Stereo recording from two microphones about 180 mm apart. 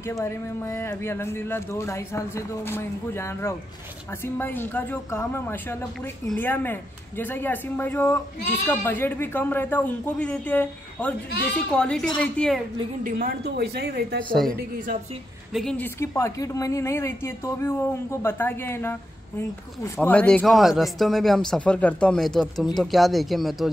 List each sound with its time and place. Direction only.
0.0 s speech: 15° left (ahead or behind)
13.0 s a woman's voice: 60° right (ahead or behind)
14.3 s speech: 5° left (ahead or behind)
15.8 s speech: 15° left (ahead or behind); by 23.7 s centre (ahead or behind)